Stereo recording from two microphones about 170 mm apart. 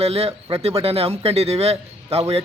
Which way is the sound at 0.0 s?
35° right (ahead or behind).